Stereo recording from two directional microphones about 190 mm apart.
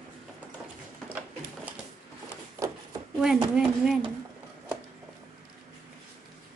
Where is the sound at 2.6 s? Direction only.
15° right (ahead or behind).